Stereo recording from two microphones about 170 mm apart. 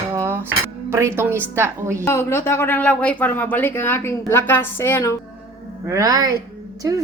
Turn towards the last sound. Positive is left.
turn(degrees=-20)  # may be behind; listen again after turning